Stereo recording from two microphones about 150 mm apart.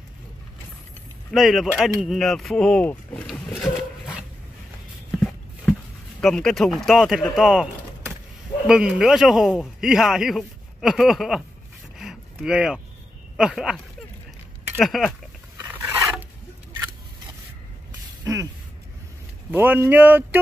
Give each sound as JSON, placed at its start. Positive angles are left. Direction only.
{"t": 1.3, "sound": "a man's voice", "side_deg": 0}
{"t": 3.4, "sound": "a sound", "side_deg": 0}
{"t": 6.2, "sound": "a man's voice", "side_deg": 5}
{"t": 12.0, "sound": "a sound", "side_deg": -5}
{"t": 13.4, "sound": "a man's voice", "side_deg": -5}
{"t": 14.8, "sound": "a man's voice", "side_deg": 0}
{"t": 15.7, "sound": "zipper", "side_deg": -15}
{"t": 18.2, "sound": "a sound", "side_deg": -20}
{"t": 19.5, "sound": "speech", "side_deg": -15}